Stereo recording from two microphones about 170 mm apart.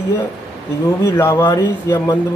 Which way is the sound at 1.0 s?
15° left (ahead or behind).